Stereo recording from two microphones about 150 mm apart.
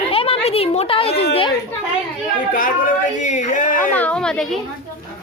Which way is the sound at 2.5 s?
65° left (ahead or behind).